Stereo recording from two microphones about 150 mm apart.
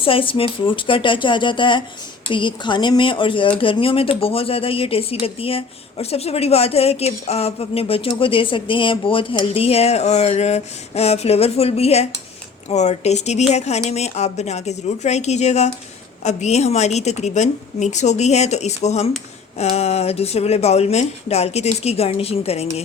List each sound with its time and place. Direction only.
0.0 s a woman's voice: 35° left (ahead or behind)